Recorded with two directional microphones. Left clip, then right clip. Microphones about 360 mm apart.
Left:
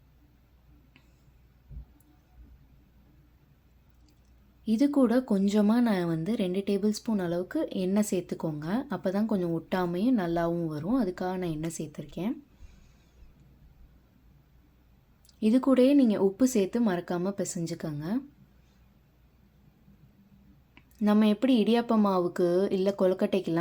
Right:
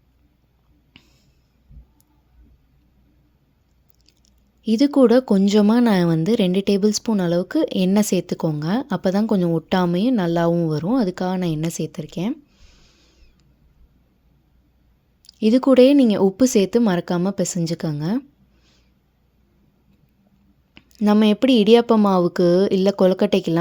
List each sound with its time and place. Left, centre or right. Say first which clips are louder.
0.9 s finger snapping: right 12 dB; right
4.6 s a woman's voice: right 10 dB; right
15.2 s a woman's voice: right 9 dB; right
20.7 s a woman's voice: right 8 dB; right